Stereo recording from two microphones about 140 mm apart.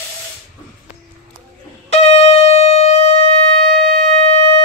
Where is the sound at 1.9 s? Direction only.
50° left (ahead or behind).